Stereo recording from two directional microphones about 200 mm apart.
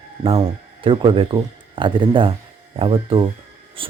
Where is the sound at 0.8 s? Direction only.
25° right (ahead or behind).